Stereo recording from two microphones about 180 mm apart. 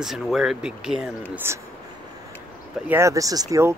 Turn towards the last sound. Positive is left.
turn(degrees=-20)  # may be behind; listen again after turning